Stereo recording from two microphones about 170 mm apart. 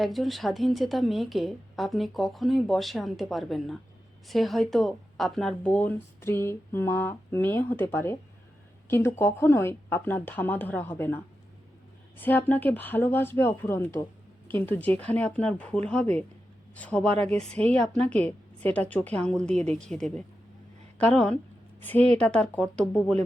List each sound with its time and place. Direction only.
0.0 s a woman's voice: centre (ahead or behind)